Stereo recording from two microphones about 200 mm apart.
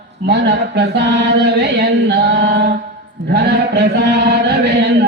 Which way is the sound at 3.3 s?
55° right (ahead or behind).